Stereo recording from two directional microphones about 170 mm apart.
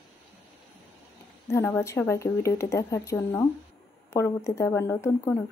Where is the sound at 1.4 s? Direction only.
15° left (ahead or behind).